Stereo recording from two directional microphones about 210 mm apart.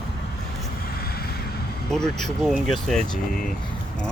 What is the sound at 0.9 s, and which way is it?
Vehicle, 45° left (ahead or behind).